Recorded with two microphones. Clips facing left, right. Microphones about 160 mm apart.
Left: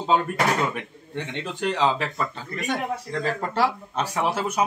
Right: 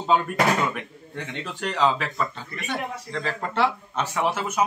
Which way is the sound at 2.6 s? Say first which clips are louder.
Left 3 dB; 45° left (ahead or behind).